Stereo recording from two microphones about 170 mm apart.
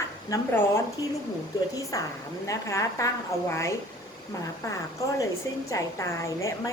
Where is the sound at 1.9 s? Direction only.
20° left (ahead or behind).